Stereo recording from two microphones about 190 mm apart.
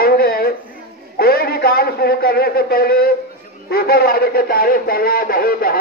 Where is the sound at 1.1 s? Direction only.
55° left (ahead or behind).